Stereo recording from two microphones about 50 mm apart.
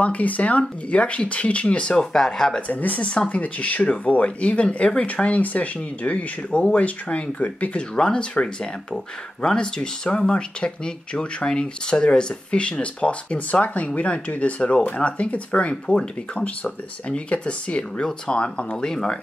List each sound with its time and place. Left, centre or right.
0.0 s speech: left; by 2.6 s centre
2.7 s speech: left; by 19.1 s centre